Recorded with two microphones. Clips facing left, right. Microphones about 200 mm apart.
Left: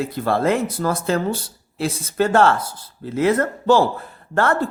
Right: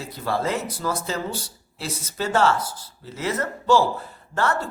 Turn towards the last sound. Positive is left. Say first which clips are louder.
# left 5 dB
turn(degrees=55)  # may be behind; listen again after turning